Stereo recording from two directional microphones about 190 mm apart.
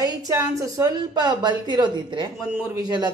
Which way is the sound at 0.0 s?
20° right (ahead or behind).